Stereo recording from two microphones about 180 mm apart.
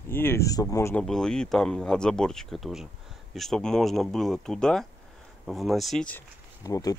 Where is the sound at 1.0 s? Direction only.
5° left (ahead or behind).